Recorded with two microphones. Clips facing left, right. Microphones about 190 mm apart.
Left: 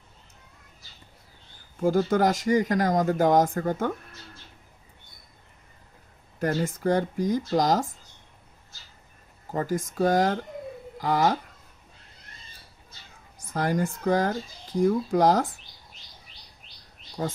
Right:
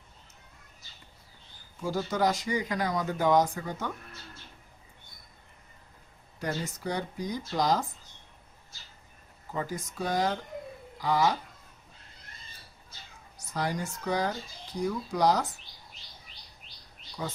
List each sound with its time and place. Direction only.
1.8 s speech: 55° left (ahead or behind)
6.4 s speech: 50° left (ahead or behind)
9.5 s speech: 45° left (ahead or behind)
13.5 s speech: 50° left (ahead or behind)